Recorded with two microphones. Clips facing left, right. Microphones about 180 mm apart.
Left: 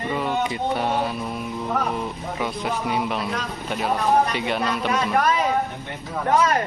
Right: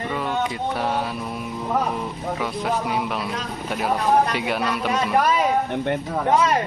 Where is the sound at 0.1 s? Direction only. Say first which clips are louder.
Left 1 dB; 5° left (ahead or behind).